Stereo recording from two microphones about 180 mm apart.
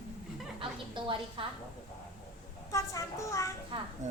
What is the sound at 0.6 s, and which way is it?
Speech, 25° right (ahead or behind).